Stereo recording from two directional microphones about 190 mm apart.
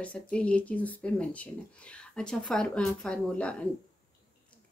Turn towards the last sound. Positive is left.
turn(degrees=5)  # may be behind; listen again after turning